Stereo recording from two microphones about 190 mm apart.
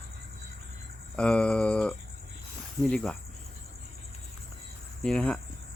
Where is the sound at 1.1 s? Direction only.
5° left (ahead or behind).